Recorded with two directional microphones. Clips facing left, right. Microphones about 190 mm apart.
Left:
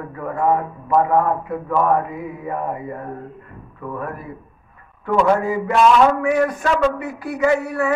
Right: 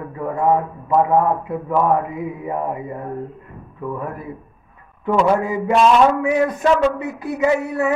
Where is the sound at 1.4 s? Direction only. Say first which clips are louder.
Right 1 dB; 20° right (ahead or behind).